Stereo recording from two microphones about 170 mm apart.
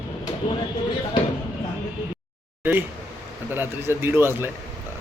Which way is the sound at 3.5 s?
15° right (ahead or behind).